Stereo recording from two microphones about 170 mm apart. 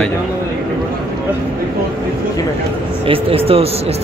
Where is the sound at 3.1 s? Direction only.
35° right (ahead or behind).